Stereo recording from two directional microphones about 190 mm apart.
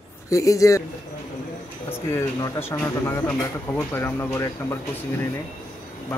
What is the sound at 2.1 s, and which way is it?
A man's voice, 15° left (ahead or behind).